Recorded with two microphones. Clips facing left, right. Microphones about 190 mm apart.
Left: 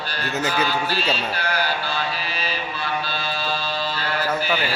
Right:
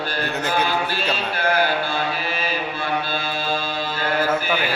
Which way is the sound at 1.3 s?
50° right (ahead or behind).